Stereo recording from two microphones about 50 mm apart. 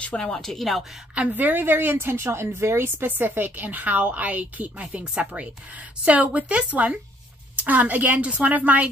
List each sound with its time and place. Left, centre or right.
0.0 s speech: left
0.4 s speech: centre
1.3 s a woman's voice: right
7.5 s a woman's voice: right